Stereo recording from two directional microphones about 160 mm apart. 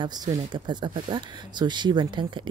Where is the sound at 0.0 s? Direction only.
25° right (ahead or behind).